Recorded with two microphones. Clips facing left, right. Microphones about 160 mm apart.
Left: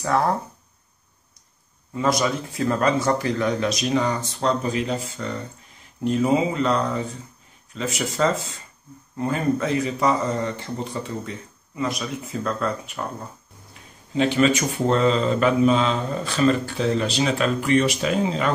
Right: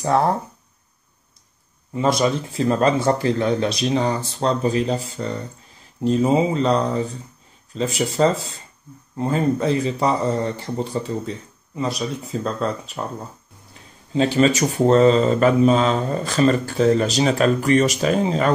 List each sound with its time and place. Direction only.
2.0 s speech: 25° right (ahead or behind)
14.1 s speech: 35° right (ahead or behind)